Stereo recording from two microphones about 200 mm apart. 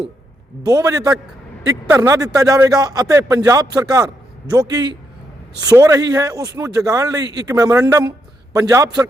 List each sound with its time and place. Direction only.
0.6 s a man's voice: 20° right (ahead or behind)